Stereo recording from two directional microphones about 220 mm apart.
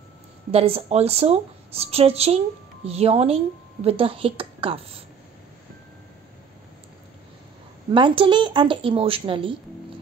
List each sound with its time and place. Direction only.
0.5 s a woman's voice: 25° right (ahead or behind)
7.9 s a woman's voice: 20° right (ahead or behind)